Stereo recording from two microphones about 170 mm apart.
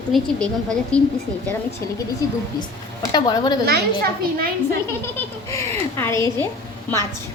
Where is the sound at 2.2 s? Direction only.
20° left (ahead or behind).